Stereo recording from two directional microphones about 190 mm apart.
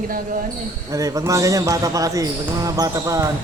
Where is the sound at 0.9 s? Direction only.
15° right (ahead or behind).